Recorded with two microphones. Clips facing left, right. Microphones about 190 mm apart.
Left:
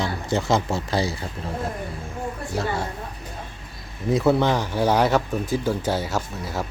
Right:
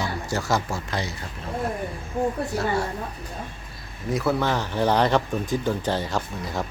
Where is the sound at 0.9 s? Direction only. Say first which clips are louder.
Left 7 dB; 30° left (ahead or behind).